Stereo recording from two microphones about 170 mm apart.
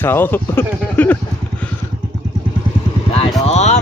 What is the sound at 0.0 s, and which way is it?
Speech, 10° left (ahead or behind).